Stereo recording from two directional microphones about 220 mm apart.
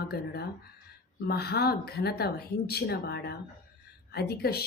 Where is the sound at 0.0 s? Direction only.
45° left (ahead or behind).